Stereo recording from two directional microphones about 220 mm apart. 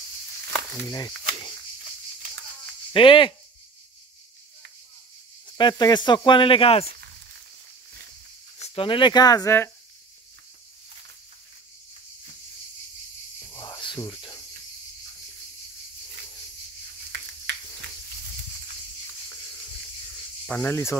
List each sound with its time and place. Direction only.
0.8 s speech: 20° left (ahead or behind)
2.9 s speech: 25° left (ahead or behind)
5.6 s speech: 20° left (ahead or behind)
8.5 s speech: 25° left (ahead or behind)
13.5 s snake: 15° left (ahead or behind)
20.4 s speech: 10° left (ahead or behind)